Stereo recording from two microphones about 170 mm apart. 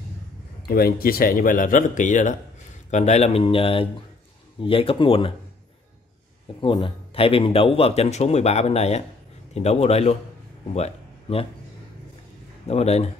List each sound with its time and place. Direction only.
0.7 s speech: 65° left (ahead or behind); by 5.3 s 30° left (ahead or behind)
6.6 s speech: 30° left (ahead or behind)
12.6 s speech: 40° left (ahead or behind)